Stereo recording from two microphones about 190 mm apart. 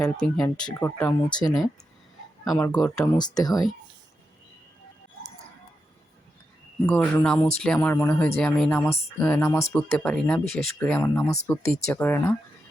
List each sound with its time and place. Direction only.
0.0 s speech: 5° left (ahead or behind)
2.6 s speech: 15° left (ahead or behind)
2.8 s speech: 5° left (ahead or behind)
3.2 s speech: 20° left (ahead or behind)
6.8 s speech: 10° left (ahead or behind)